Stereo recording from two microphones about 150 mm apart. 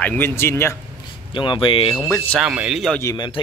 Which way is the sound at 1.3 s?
35° left (ahead or behind).